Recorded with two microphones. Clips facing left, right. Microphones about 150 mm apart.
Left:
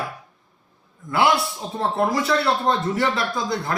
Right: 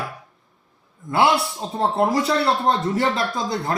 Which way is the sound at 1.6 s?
25° right (ahead or behind).